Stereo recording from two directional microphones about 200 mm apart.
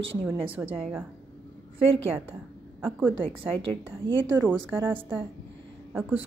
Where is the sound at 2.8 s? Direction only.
10° right (ahead or behind).